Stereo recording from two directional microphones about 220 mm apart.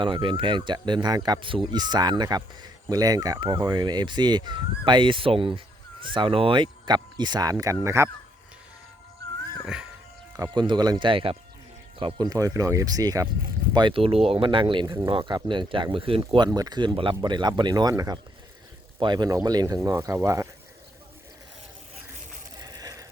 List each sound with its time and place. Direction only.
0.0 s speech: 20° right (ahead or behind)
10.3 s speech: 15° right (ahead or behind)
22.6 s a sound: 15° right (ahead or behind)